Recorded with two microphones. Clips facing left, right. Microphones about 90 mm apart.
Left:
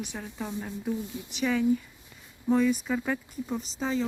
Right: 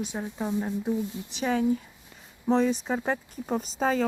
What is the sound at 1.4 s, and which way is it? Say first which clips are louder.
Speech: even; 45° right (ahead or behind).